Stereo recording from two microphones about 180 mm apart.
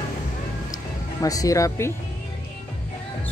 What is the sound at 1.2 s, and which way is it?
Speech, 20° left (ahead or behind).